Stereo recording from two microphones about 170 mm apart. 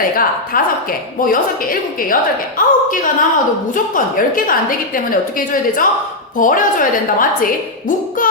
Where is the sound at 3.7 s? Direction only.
55° left (ahead or behind).